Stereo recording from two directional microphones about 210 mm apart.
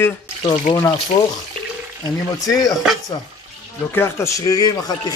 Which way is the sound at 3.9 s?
10° left (ahead or behind).